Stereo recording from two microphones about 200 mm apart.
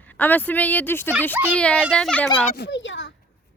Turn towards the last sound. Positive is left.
turn(degrees=70)  # may be behind; listen again after turning